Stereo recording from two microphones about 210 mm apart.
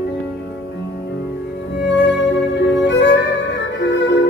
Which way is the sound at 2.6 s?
55° left (ahead or behind).